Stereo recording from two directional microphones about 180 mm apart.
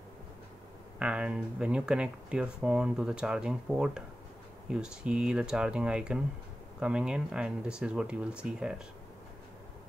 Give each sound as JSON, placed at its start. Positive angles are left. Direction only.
{"t": 0.9, "sound": "speech", "side_deg": -5}